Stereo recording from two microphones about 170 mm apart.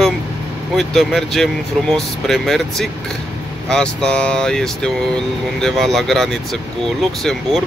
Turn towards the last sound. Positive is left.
turn(degrees=0)  # may be behind; listen again after turning